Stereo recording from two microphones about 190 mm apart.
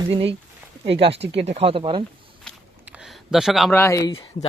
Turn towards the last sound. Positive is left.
turn(degrees=25)  # may be behind; listen again after turning